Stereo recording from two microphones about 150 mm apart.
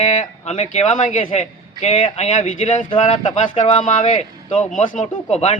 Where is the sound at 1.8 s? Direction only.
40° left (ahead or behind).